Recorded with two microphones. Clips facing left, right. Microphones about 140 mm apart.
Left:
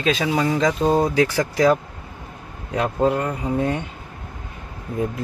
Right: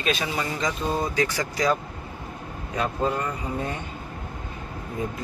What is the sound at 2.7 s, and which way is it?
Speech, 65° left (ahead or behind).